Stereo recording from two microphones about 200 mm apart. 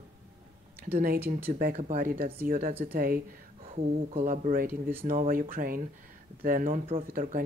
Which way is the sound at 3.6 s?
30° right (ahead or behind).